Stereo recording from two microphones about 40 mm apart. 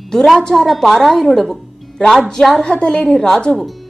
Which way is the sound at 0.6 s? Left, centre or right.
Centre.